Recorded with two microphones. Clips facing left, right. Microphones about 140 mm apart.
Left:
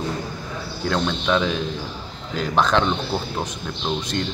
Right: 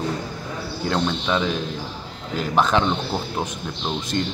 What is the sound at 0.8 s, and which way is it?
Speech, 5° right (ahead or behind).